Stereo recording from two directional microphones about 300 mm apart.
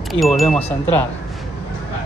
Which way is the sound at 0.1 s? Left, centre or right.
Centre.